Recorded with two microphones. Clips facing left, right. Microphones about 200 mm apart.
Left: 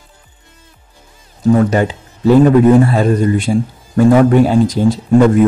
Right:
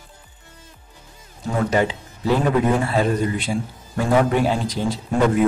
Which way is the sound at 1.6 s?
45° left (ahead or behind).